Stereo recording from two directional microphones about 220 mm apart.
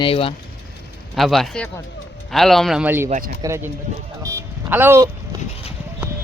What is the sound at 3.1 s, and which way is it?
Speech, 40° right (ahead or behind).